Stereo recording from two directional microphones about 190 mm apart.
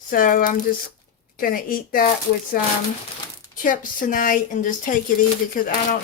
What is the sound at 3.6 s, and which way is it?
Speech, 45° left (ahead or behind).